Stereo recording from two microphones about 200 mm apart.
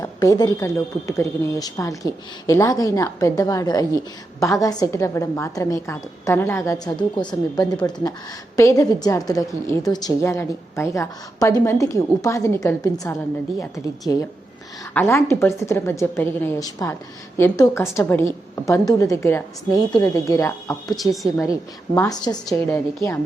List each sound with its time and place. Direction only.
0.0 s a woman's voice: 15° left (ahead or behind)
14.9 s a woman's voice: 15° left (ahead or behind)
20.9 s a woman's voice: centre (ahead or behind)
21.9 s a woman's voice: 15° left (ahead or behind)